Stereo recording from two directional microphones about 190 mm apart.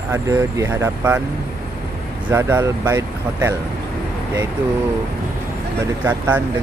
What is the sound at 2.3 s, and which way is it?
Speech, 15° right (ahead or behind).